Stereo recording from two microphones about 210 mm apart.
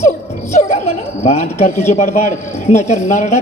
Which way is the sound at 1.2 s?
30° left (ahead or behind).